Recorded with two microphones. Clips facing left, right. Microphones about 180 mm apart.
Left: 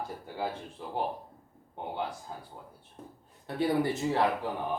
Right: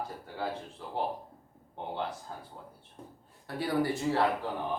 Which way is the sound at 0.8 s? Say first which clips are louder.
Left 2 dB; 15° left (ahead or behind).